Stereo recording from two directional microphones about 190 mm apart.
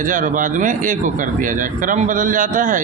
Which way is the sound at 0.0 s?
45° right (ahead or behind).